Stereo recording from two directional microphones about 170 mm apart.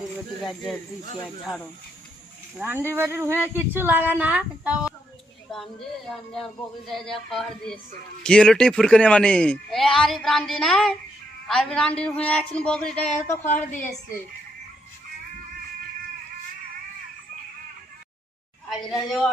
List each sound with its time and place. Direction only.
0.4 s speech: centre (ahead or behind)
2.6 s speech: 10° right (ahead or behind)
6.8 s a woman's voice: centre (ahead or behind)
13.5 s a woman's voice: 45° left (ahead or behind)
18.7 s speech: centre (ahead or behind)